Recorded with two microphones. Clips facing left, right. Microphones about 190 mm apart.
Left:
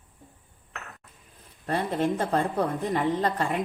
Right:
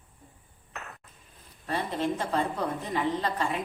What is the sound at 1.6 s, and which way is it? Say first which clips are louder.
A woman's voice: left 3 dB; 50° left (ahead or behind).